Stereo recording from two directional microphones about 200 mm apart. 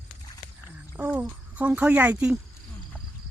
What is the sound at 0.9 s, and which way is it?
Speech, 10° right (ahead or behind).